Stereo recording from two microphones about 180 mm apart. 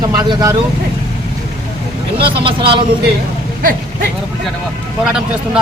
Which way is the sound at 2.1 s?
30° right (ahead or behind).